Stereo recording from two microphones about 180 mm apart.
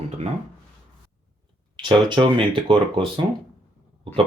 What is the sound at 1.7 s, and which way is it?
Speech, 25° right (ahead or behind).